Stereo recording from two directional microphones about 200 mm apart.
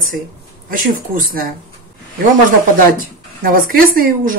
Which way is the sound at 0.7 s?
45° right (ahead or behind).